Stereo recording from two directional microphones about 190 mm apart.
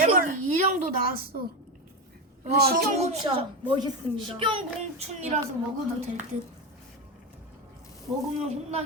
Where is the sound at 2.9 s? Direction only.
35° right (ahead or behind).